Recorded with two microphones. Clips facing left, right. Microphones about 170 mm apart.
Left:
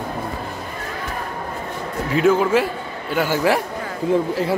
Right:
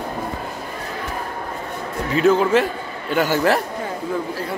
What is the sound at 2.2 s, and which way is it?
A man's voice, 10° left (ahead or behind).